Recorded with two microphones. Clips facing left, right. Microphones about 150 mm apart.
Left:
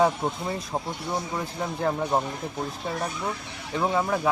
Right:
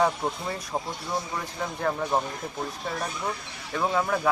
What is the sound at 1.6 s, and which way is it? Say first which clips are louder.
Speech: left 1 dB; 20° left (ahead or behind).